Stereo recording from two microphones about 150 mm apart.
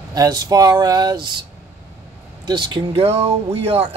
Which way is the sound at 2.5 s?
30° right (ahead or behind).